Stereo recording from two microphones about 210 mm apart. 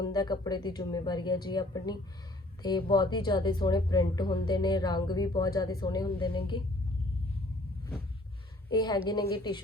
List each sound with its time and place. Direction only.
0.0 s a woman's voice: 20° left (ahead or behind)
8.7 s a woman's voice: 20° left (ahead or behind)